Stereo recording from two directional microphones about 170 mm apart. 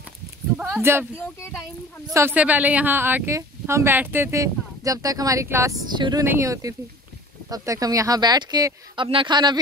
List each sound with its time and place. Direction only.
0.6 s a sound: 5° right (ahead or behind)
1.1 s speech: 15° left (ahead or behind)
2.1 s a woman's voice: 10° right (ahead or behind)